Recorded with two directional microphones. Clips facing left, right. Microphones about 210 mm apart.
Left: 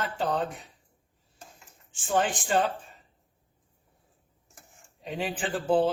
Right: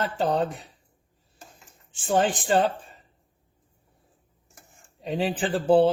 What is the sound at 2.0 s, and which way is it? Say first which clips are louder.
Speech: right 4 dB; 35° right (ahead or behind).